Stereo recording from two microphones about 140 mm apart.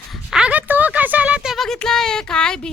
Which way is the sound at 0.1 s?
5° right (ahead or behind).